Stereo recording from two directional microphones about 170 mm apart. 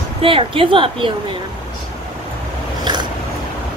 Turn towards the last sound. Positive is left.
turn(degrees=-25)  # may be behind; listen again after turning